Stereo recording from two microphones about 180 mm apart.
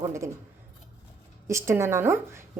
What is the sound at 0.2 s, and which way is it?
Speech, 15° right (ahead or behind).